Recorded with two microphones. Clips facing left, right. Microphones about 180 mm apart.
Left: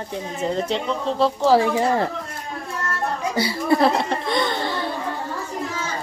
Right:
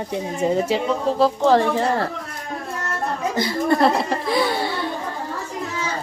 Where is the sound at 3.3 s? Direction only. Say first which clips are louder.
Even; 10° left (ahead or behind); by 4.7 s 5° right (ahead or behind).